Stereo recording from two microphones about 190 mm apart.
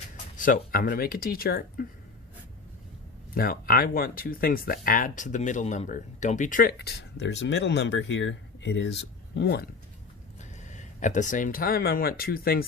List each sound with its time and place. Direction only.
0.3 s speech: 45° left (ahead or behind)
3.3 s speech: 50° left (ahead or behind)
10.6 s speech: 40° left (ahead or behind)